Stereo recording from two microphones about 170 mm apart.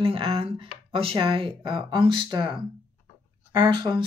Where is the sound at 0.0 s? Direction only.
30° right (ahead or behind).